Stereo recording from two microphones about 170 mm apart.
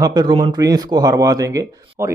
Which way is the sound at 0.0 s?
25° right (ahead or behind).